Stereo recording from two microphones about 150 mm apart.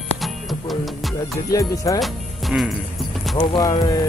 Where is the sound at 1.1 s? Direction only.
20° left (ahead or behind).